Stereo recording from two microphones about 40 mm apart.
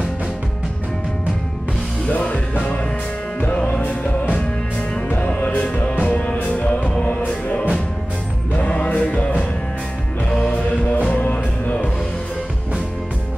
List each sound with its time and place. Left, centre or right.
2.0 s music: left
3.8 s music: left
8.5 s music: left